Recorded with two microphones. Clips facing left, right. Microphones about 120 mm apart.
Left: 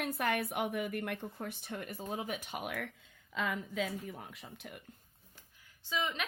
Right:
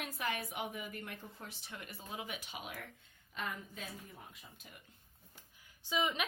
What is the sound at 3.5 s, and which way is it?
Speech, 90° left.